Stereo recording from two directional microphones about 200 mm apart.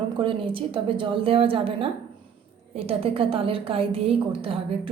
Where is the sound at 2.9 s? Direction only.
30° right (ahead or behind).